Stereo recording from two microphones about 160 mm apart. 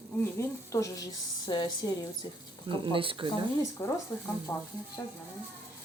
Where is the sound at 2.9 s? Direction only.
35° right (ahead or behind).